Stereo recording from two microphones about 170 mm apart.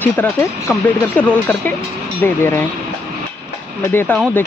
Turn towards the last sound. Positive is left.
turn(degrees=10)  # may be behind; listen again after turning